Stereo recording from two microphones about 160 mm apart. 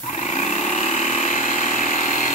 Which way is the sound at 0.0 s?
45° left (ahead or behind).